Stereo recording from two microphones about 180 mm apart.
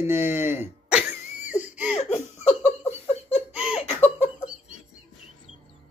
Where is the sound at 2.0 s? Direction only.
35° left (ahead or behind).